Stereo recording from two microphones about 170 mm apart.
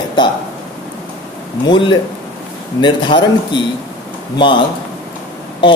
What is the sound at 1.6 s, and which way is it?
Speech, 25° left (ahead or behind).